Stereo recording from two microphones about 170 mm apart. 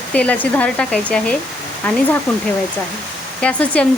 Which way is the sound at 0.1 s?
10° left (ahead or behind).